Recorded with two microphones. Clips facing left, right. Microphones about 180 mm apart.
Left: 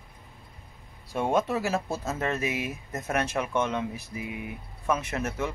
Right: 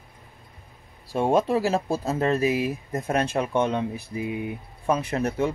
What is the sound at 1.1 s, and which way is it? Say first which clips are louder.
Speech: right 5 dB; 30° right (ahead or behind).